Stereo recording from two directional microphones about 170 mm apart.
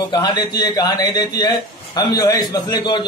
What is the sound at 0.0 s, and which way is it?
A man's voice, 25° left (ahead or behind).